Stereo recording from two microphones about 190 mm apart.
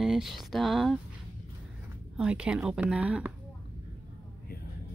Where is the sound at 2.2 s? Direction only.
5° right (ahead or behind).